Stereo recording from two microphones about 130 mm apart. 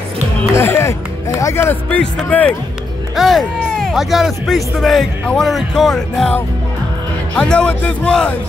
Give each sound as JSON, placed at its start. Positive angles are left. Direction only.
{"t": 0.6, "sound": "speech", "side_deg": 20}
{"t": 3.2, "sound": "speech", "side_deg": 0}
{"t": 7.3, "sound": "speech", "side_deg": 10}